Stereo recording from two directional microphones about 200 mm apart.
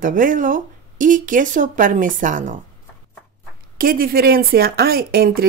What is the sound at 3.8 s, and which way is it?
Speech, 45° right (ahead or behind).